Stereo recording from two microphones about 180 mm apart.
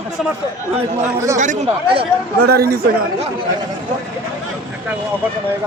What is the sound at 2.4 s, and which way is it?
Speech, 60° right (ahead or behind).